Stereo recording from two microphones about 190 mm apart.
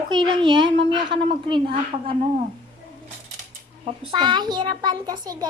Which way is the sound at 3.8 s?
25° right (ahead or behind).